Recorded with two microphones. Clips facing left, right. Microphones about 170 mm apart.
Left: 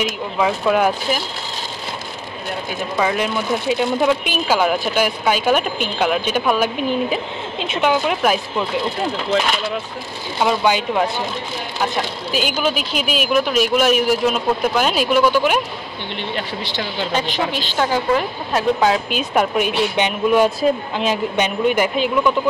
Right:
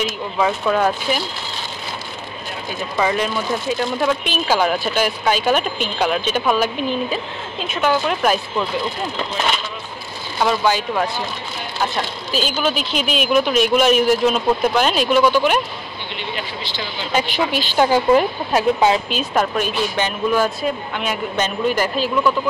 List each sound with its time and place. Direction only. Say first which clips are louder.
0.0 s speech: even; 10° left (ahead or behind)
3.0 s speech: even; centre (ahead or behind)
7.5 s speech: left 1 dB; 25° left (ahead or behind)
7.9 s speech: right 1 dB; 10° left (ahead or behind)
10.4 s speech: left 1 dB; 15° left (ahead or behind)
12.3 s speech: even; 10° left (ahead or behind)
17.1 s a woman's voice: right 4 dB; 10° right (ahead or behind)
19.3 s speech: left 2 dB; 10° left (ahead or behind)